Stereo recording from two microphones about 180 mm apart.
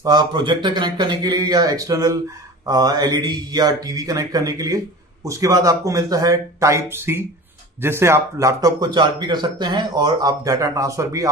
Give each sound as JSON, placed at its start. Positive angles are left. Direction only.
{"t": 0.0, "sound": "speech", "side_deg": -25}